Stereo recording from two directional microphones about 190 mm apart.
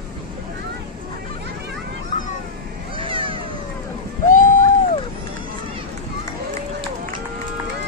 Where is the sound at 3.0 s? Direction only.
25° right (ahead or behind).